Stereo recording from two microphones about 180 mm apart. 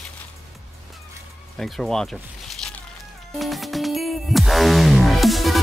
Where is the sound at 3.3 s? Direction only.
Centre (ahead or behind).